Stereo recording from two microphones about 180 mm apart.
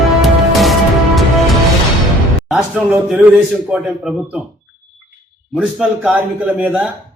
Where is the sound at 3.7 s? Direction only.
5° right (ahead or behind).